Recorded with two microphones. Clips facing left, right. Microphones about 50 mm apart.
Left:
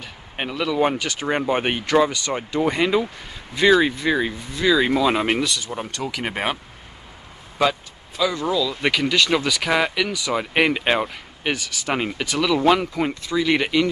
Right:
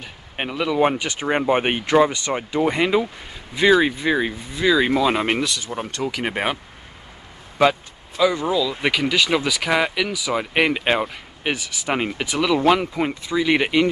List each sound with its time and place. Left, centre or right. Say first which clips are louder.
0.0 s speech: right 1 dB; centre
8.2 s speech: right 2 dB; centre